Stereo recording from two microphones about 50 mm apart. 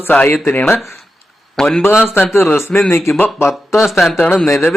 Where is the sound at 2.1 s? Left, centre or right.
Left.